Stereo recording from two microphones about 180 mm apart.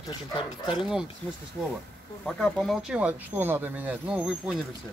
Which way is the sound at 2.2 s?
Centre (ahead or behind).